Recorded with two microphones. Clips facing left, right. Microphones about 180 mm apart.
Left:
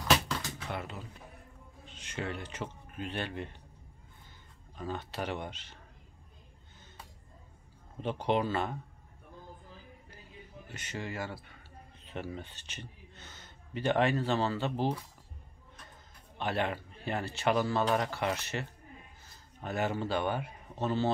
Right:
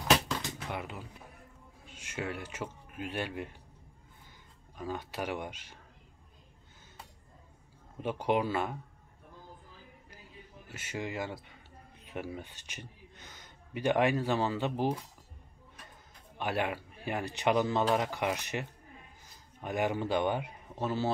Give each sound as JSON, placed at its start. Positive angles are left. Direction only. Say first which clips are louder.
{"t": 0.7, "sound": "speech", "louder": "even", "side_deg": -10}
{"t": 4.7, "sound": "speech", "louder": "even", "side_deg": -10}
{"t": 8.0, "sound": "speech", "louder": "even", "side_deg": -10}
{"t": 10.7, "sound": "speech", "louder": "right 2 dB", "side_deg": -10}
{"t": 16.3, "sound": "speech", "louder": "even", "side_deg": -10}